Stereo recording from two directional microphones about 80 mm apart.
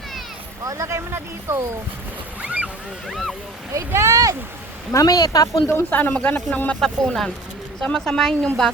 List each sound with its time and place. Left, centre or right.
0.6 s speech: right
2.4 s a sound: centre
3.1 s speech: centre
3.8 s speech: right
4.9 s speech: left
5.9 s speech: centre